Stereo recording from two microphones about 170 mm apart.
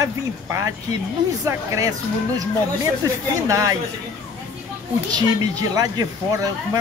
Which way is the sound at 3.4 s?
20° right (ahead or behind).